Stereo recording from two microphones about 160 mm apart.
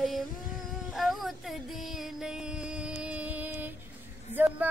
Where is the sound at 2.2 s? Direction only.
5° right (ahead or behind).